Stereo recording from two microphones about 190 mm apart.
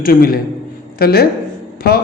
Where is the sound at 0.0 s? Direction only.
50° left (ahead or behind).